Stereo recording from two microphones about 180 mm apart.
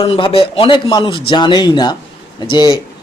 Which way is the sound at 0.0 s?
30° left (ahead or behind).